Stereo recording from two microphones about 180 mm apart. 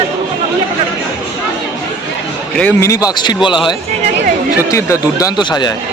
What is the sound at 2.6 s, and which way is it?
Speech, 10° left (ahead or behind).